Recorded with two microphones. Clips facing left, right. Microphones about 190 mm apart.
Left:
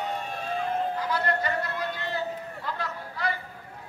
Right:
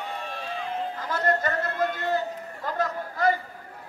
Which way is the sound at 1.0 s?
45° right (ahead or behind).